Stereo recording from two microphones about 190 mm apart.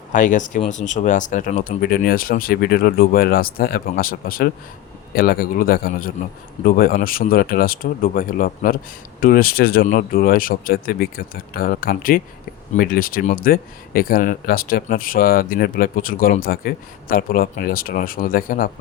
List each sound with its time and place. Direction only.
0.1 s speech: 40° left (ahead or behind)